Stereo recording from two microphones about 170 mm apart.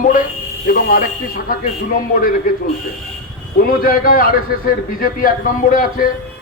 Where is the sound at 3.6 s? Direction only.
60° left (ahead or behind).